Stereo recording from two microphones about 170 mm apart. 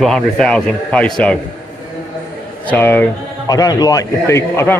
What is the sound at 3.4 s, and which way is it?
A man's voice, 20° left (ahead or behind).